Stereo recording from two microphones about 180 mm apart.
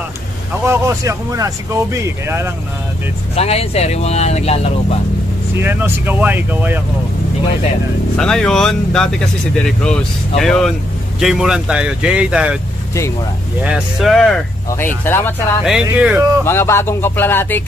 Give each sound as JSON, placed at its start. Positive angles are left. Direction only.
{"t": 0.7, "sound": "speech", "side_deg": -15}
{"t": 3.3, "sound": "speech", "side_deg": 35}
{"t": 5.6, "sound": "speech", "side_deg": -10}
{"t": 8.2, "sound": "speech", "side_deg": 5}
{"t": 13.6, "sound": "speech", "side_deg": -5}
{"t": 15.0, "sound": "music", "side_deg": 10}
{"t": 15.6, "sound": "speech", "side_deg": -5}
{"t": 16.4, "sound": "music", "side_deg": 15}